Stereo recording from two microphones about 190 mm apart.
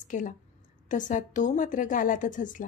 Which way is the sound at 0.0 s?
40° left (ahead or behind).